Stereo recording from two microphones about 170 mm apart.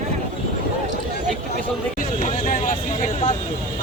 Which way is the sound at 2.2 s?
50° left (ahead or behind).